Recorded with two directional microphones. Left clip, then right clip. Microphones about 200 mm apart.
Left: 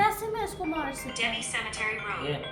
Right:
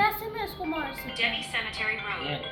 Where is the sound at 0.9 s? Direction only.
10° left (ahead or behind).